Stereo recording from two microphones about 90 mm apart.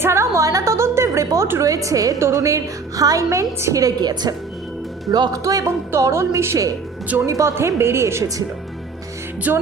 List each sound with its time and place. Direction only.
0.0 s a sound: 30° right (ahead or behind)
1.5 s a woman's voice: 35° right (ahead or behind)
9.5 s a woman's voice: 20° right (ahead or behind)